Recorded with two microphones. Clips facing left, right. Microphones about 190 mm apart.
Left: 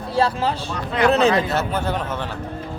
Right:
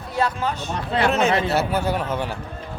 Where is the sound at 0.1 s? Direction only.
30° left (ahead or behind).